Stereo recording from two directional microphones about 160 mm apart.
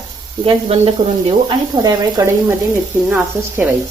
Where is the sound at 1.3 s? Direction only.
25° right (ahead or behind).